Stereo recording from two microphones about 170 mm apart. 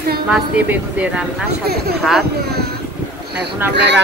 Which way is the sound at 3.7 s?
90° right.